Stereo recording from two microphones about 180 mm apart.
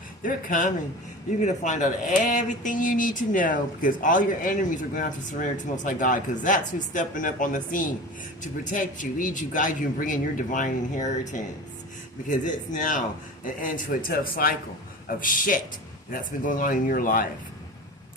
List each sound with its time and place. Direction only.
0.2 s speech: 50° left (ahead or behind)
12.5 s speech: 45° left (ahead or behind)